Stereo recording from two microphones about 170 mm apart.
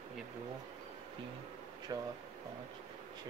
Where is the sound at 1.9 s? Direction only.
25° right (ahead or behind).